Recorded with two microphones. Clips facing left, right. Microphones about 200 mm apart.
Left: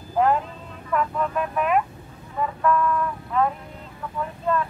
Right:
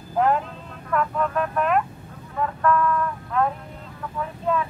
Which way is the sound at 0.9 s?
5° left (ahead or behind).